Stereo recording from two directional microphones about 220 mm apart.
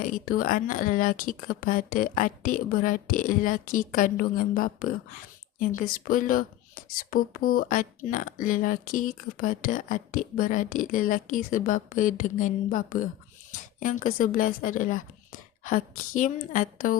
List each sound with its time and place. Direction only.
0.0 s a woman's voice: 40° left (ahead or behind)